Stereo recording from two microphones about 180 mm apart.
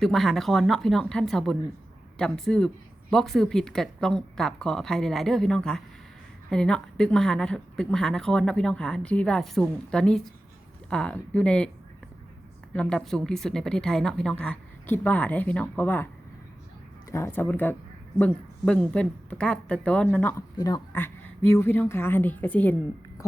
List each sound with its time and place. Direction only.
0.0 s speech: centre (ahead or behind)
12.7 s speech: 5° left (ahead or behind)
17.1 s a woman's voice: 15° left (ahead or behind)
20.6 s a woman's voice: 20° left (ahead or behind)